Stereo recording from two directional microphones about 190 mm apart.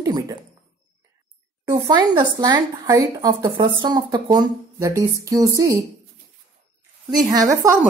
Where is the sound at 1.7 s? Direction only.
20° right (ahead or behind).